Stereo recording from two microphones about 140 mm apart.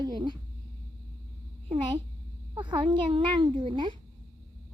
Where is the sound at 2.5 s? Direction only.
35° right (ahead or behind).